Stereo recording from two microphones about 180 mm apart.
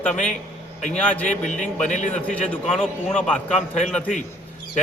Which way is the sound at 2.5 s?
5° left (ahead or behind).